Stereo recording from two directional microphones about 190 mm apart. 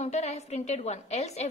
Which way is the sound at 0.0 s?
35° left (ahead or behind).